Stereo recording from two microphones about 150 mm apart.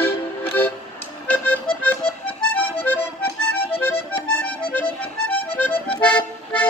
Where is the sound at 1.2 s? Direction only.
10° left (ahead or behind).